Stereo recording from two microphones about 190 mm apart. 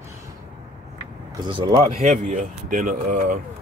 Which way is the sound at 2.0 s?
40° right (ahead or behind).